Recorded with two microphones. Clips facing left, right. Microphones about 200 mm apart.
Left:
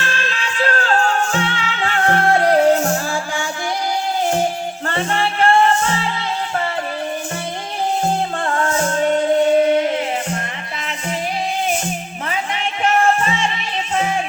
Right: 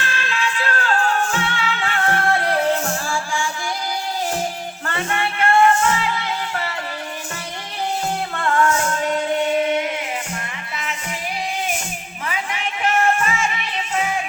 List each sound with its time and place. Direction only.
0.0 s music: 40° left (ahead or behind)
4.9 s music: 30° left (ahead or behind)
8.0 s music: 30° left (ahead or behind)
12.3 s music: 30° left (ahead or behind)